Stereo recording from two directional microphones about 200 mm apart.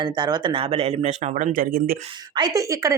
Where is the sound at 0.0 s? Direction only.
20° right (ahead or behind); by 2.0 s 45° right (ahead or behind).